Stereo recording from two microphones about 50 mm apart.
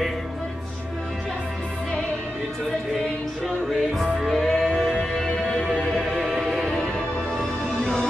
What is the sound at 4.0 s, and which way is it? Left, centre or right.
Music, centre.